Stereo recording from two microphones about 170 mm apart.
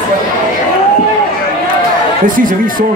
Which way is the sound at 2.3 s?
55° right (ahead or behind).